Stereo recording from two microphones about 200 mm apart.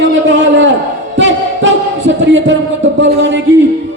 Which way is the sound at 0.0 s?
70° right (ahead or behind).